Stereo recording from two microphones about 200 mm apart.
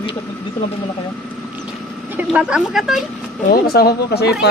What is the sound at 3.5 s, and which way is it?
Speech, 50° left (ahead or behind).